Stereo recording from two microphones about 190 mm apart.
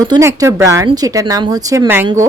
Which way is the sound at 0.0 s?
15° right (ahead or behind).